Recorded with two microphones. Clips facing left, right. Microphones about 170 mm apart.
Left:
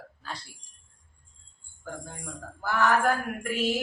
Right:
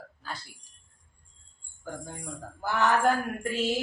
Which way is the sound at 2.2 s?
20° right (ahead or behind).